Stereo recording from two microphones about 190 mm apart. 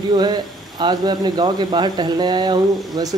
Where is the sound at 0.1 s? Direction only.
25° right (ahead or behind).